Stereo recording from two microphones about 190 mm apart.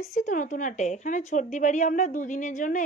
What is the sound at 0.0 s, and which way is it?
A woman's voice, 35° left (ahead or behind).